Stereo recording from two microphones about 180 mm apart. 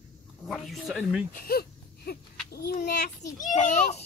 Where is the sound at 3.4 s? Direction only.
45° left (ahead or behind).